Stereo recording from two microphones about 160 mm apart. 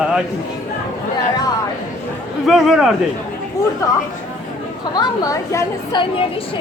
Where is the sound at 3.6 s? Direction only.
20° left (ahead or behind).